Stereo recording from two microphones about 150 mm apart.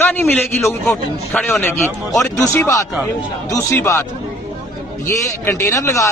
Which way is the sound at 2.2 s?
20° left (ahead or behind).